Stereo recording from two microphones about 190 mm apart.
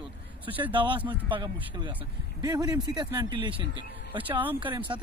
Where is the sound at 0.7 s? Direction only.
25° right (ahead or behind).